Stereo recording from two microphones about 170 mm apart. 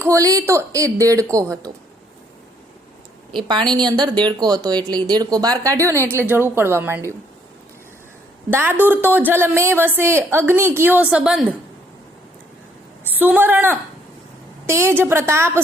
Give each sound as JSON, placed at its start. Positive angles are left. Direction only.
{"t": 0.0, "sound": "speech", "side_deg": -20}
{"t": 3.5, "sound": "speech", "side_deg": -25}
{"t": 8.4, "sound": "a woman's voice", "side_deg": -15}
{"t": 13.1, "sound": "a woman's voice", "side_deg": -10}